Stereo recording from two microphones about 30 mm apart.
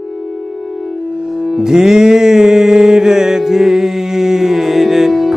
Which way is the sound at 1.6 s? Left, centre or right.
Right.